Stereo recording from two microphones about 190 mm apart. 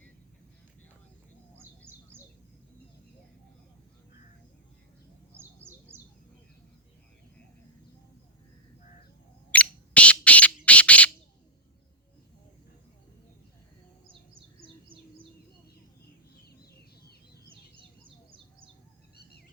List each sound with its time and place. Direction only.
9.5 s bird: 5° left (ahead or behind)
14.1 s bird: 30° right (ahead or behind)
17.5 s bird: 25° right (ahead or behind)
19.1 s music: 55° left (ahead or behind)